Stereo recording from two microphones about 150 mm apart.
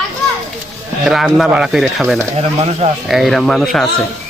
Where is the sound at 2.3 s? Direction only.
40° right (ahead or behind).